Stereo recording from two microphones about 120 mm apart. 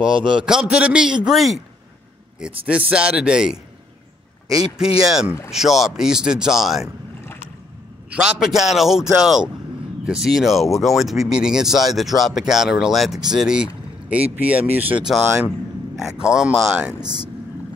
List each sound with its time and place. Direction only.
0.3 s a man's voice: 5° right (ahead or behind)
2.6 s a man's voice: 10° right (ahead or behind)
4.7 s speech: 5° right (ahead or behind)
8.1 s a man's voice: 5° right (ahead or behind)
16.0 s a man's voice: 5° right (ahead or behind)